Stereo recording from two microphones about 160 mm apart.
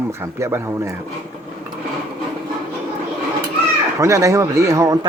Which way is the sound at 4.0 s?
20° right (ahead or behind).